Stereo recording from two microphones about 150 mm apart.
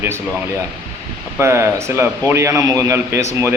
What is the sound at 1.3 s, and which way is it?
Speech, 15° right (ahead or behind).